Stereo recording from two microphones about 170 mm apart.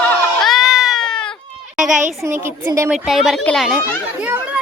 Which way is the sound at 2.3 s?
15° right (ahead or behind).